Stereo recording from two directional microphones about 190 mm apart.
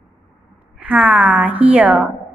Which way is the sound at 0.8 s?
5° right (ahead or behind).